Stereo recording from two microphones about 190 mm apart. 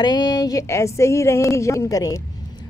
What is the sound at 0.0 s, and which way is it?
Speech, 20° left (ahead or behind).